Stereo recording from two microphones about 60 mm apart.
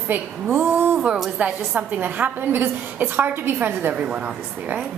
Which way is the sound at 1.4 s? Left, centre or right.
Right.